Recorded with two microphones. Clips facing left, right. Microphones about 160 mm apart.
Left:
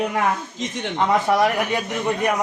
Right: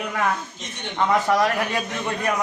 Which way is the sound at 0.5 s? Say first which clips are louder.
Left 8 dB; 90° left.